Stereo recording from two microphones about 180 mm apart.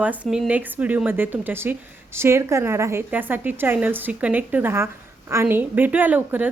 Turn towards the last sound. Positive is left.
turn(degrees=-10)  # may be behind; listen again after turning